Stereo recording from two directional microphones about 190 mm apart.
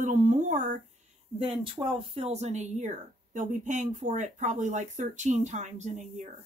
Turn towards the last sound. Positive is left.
turn(degrees=-40)  # may be behind; listen again after turning